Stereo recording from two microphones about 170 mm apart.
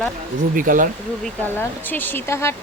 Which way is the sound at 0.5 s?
55° right (ahead or behind).